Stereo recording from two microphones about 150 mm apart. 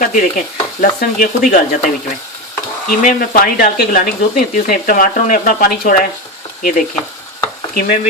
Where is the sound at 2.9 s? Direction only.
70° left (ahead or behind).